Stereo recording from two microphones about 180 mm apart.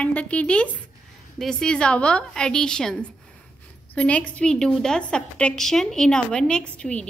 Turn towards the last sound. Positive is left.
turn(degrees=5)  # may be behind; listen again after turning